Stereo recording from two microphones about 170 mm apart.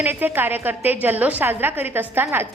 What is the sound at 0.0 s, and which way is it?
A woman's voice, 10° right (ahead or behind).